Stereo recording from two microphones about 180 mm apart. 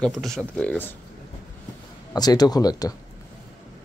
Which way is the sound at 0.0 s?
Centre (ahead or behind).